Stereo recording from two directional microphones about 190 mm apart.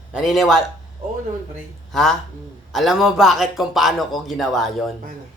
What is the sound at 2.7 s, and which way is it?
A man's voice, centre (ahead or behind).